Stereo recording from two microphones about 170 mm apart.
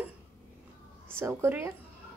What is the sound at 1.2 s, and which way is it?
Speech, 15° right (ahead or behind).